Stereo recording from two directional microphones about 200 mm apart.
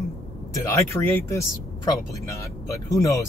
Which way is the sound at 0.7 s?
15° left (ahead or behind).